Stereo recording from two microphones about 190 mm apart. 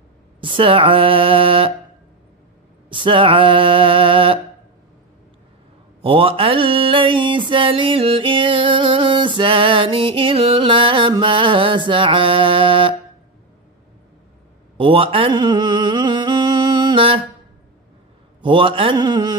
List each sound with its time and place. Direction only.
0.4 s mantra: 25° right (ahead or behind)
2.9 s mantra: 25° right (ahead or behind)
6.0 s mantra: 30° right (ahead or behind)
14.8 s music: 30° right (ahead or behind)
18.4 s mantra: 25° right (ahead or behind)